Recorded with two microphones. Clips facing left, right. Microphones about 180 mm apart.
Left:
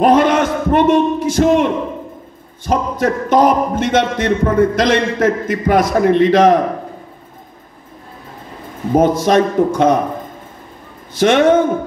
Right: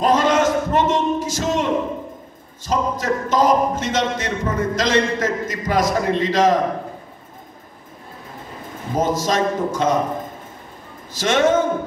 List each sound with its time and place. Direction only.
0.0 s a man's voice: 55° left (ahead or behind)
8.9 s a man's voice: 55° left (ahead or behind)
11.1 s a man's voice: 55° left (ahead or behind)